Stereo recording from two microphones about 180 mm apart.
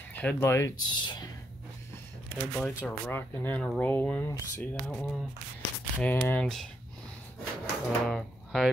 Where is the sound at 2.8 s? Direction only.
10° left (ahead or behind).